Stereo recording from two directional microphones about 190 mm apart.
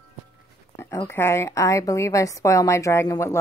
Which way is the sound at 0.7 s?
15° left (ahead or behind).